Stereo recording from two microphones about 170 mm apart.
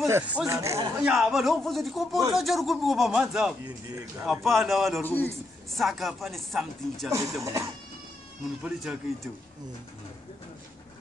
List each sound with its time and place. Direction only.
0.0 s speech: 15° right (ahead or behind)
1.0 s speech: 5° right (ahead or behind)
5.0 s a man's voice: 10° left (ahead or behind)
5.7 s speech: centre (ahead or behind)
7.1 s speech: 20° right (ahead or behind)
8.6 s speech: 5° right (ahead or behind)